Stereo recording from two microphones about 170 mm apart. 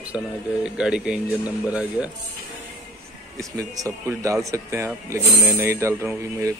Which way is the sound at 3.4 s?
20° right (ahead or behind).